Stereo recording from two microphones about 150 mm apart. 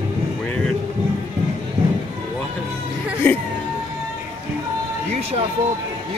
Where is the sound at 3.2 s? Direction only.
10° left (ahead or behind).